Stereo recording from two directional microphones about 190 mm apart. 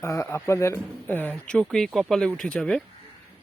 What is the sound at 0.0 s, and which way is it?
Speech, 15° left (ahead or behind).